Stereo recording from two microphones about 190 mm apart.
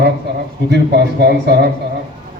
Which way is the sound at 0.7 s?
60° right (ahead or behind).